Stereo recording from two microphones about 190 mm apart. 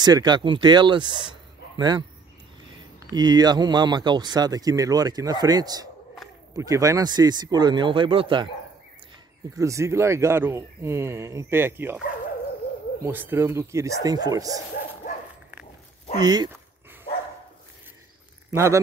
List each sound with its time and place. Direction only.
0.0 s speech: 20° right (ahead or behind)
3.1 s speech: 20° right (ahead or behind)
9.6 s speech: 15° right (ahead or behind)
13.0 s speech: 10° right (ahead or behind)
16.2 s speech: 20° right (ahead or behind)
18.5 s speech: 15° right (ahead or behind)